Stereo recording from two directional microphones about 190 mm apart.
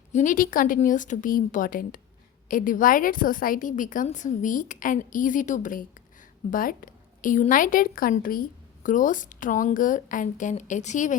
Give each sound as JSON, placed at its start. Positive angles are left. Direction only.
{"t": 0.1, "sound": "a woman's voice", "side_deg": 40}